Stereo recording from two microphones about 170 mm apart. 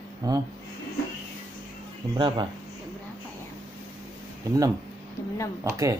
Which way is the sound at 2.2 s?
25° right (ahead or behind).